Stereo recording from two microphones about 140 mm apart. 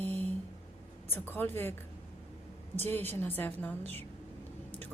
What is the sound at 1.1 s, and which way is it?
Speech, 15° left (ahead or behind).